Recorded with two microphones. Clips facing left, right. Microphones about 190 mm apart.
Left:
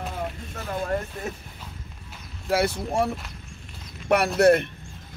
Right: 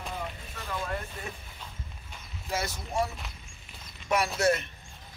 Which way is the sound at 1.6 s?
Centre (ahead or behind).